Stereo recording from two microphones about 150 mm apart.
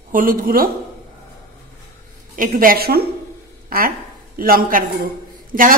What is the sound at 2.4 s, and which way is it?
Speech, 70° right (ahead or behind).